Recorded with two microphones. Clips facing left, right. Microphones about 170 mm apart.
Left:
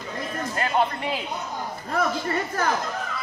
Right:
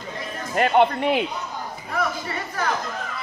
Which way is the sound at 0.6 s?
70° right (ahead or behind).